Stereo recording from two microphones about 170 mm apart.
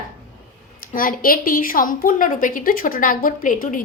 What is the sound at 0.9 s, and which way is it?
A woman's voice, 55° left (ahead or behind).